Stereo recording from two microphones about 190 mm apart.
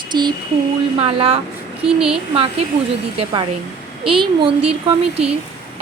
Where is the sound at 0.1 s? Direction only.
20° right (ahead or behind).